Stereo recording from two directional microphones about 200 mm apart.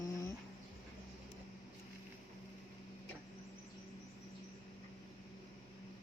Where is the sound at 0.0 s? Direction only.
15° left (ahead or behind).